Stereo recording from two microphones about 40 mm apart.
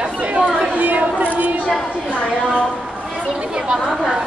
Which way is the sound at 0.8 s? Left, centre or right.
Right.